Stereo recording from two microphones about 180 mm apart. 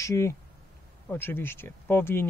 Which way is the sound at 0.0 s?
15° left (ahead or behind).